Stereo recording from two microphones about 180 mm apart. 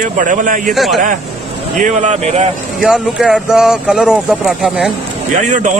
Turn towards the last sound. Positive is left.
turn(degrees=-45)  # may be behind; listen again after turning